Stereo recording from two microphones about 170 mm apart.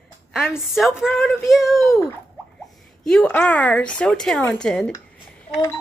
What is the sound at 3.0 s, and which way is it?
A woman's voice, 5° left (ahead or behind).